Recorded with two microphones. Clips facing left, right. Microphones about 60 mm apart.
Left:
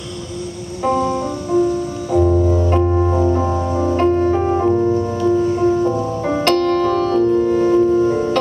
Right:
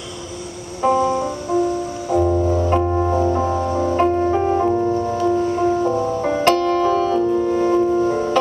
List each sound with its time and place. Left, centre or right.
0.8 s music: centre
7.3 s music: centre